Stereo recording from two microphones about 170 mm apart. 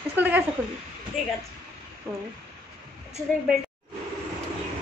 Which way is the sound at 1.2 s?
Centre (ahead or behind).